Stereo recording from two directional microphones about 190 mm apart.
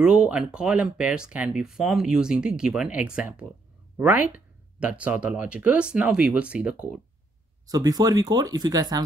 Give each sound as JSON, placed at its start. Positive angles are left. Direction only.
{"t": 0.0, "sound": "speech", "side_deg": -5}
{"t": 7.6, "sound": "speech", "side_deg": -20}